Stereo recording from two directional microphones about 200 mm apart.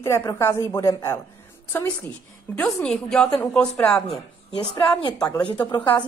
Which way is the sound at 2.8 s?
5° left (ahead or behind).